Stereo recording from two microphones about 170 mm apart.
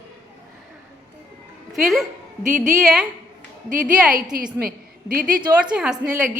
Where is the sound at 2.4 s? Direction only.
50° right (ahead or behind).